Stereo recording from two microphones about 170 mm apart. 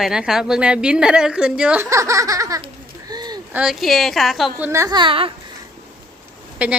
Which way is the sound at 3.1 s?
25° right (ahead or behind).